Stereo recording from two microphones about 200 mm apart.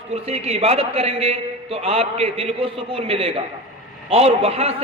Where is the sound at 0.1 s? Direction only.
30° right (ahead or behind).